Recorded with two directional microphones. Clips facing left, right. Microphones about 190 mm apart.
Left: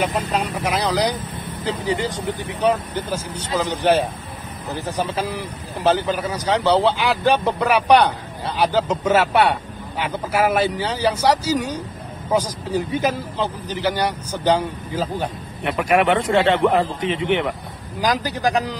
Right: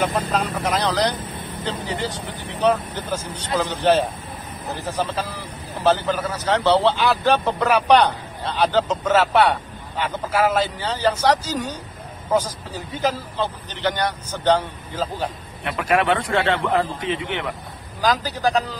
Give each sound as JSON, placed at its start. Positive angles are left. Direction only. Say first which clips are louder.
{"t": 0.0, "sound": "a man's voice", "louder": "even", "side_deg": 10}